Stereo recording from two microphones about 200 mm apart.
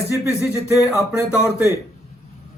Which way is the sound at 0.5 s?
15° left (ahead or behind).